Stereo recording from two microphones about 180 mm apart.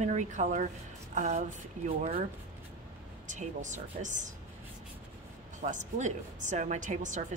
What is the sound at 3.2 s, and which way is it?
A woman's voice, 45° right (ahead or behind).